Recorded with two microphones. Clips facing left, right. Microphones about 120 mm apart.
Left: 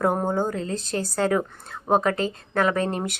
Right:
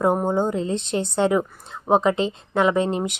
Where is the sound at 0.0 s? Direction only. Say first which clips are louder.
Right 3 dB; 15° right (ahead or behind).